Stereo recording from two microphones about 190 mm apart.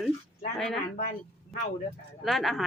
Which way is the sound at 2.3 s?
Centre (ahead or behind).